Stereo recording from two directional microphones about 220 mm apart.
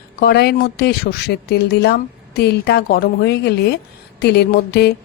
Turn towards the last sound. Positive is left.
turn(degrees=45)  # may be behind; listen again after turning